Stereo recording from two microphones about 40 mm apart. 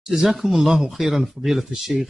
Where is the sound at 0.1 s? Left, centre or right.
Centre.